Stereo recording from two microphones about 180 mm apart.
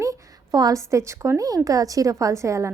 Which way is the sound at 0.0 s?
20° right (ahead or behind).